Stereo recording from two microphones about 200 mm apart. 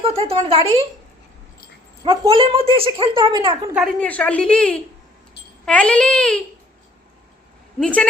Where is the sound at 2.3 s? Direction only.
25° right (ahead or behind).